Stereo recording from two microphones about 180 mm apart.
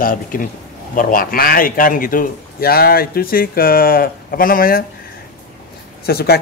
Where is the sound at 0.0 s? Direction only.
50° left (ahead or behind).